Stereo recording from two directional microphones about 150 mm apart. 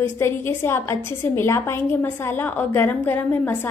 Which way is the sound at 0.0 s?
15° left (ahead or behind).